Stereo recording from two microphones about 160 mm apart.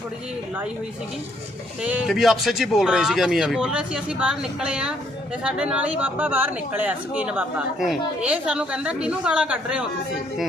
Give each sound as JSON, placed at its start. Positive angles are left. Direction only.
{"t": 1.8, "sound": "speech", "side_deg": -5}